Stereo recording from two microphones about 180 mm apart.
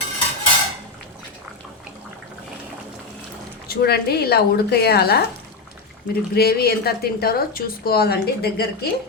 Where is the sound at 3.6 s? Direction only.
60° left (ahead or behind).